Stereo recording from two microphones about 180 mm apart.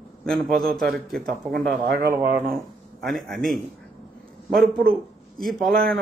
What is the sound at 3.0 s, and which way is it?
Speech, centre (ahead or behind).